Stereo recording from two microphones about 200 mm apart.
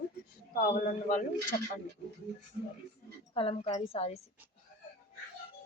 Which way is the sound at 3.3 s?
30° left (ahead or behind).